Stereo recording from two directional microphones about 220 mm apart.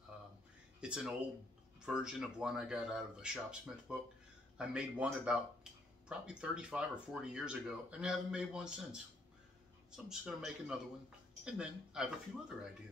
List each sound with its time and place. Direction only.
0.7 s speech: 5° right (ahead or behind)